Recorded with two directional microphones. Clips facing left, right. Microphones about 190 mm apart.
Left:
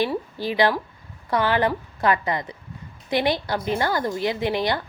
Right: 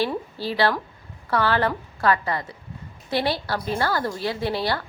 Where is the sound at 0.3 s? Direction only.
15° left (ahead or behind).